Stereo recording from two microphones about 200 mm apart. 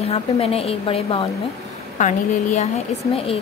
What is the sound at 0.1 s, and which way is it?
Speech, 30° left (ahead or behind).